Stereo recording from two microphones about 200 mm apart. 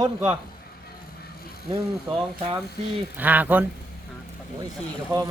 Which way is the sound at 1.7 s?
25° right (ahead or behind).